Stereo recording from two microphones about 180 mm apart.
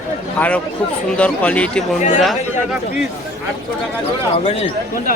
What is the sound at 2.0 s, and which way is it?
Speech, 40° left (ahead or behind).